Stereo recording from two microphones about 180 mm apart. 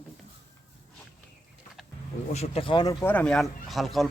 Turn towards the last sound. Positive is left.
turn(degrees=0)  # may be behind; listen again after turning